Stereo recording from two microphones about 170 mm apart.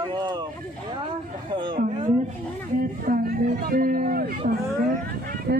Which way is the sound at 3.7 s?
55° right (ahead or behind).